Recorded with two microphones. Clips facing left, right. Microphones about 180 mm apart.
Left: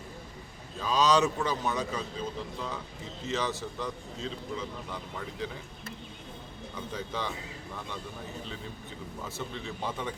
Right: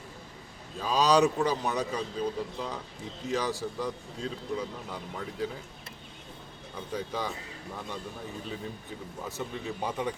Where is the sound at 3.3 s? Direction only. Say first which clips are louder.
Right 2 dB; 10° right (ahead or behind).